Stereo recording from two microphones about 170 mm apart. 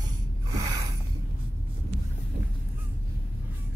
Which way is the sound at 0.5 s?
25° right (ahead or behind).